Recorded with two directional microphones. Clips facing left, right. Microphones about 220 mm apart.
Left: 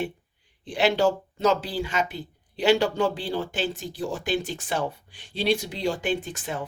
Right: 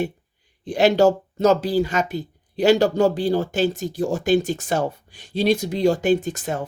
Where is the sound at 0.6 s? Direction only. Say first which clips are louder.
Right 6 dB; 40° right (ahead or behind).